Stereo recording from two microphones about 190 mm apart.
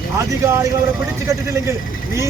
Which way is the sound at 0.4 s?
15° right (ahead or behind).